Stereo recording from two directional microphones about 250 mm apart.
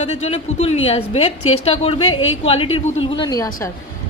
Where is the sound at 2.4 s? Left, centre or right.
Left.